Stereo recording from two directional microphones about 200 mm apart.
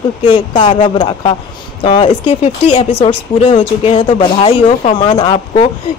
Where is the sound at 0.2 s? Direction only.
25° left (ahead or behind).